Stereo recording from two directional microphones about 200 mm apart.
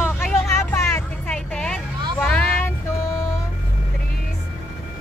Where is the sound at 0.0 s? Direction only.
10° left (ahead or behind).